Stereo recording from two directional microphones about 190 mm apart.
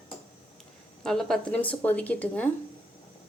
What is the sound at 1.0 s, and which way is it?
Speech, centre (ahead or behind).